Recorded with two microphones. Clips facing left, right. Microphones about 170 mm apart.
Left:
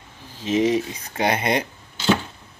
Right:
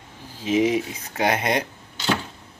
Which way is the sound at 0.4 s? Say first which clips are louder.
Left 1 dB; 10° right (ahead or behind).